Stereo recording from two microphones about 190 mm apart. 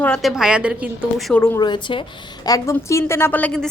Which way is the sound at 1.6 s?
25° left (ahead or behind).